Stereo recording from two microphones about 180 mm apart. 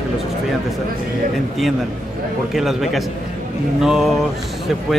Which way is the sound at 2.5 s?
Centre (ahead or behind).